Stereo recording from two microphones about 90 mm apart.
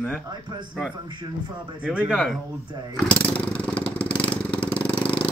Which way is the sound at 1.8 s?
15° right (ahead or behind).